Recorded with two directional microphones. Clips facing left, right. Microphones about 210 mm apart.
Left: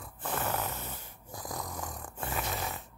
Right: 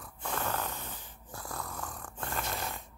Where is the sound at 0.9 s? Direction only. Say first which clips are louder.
Left 2 dB; 10° left (ahead or behind).